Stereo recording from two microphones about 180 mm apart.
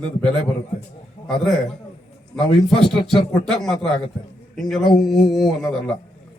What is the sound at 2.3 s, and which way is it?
A man's voice, centre (ahead or behind).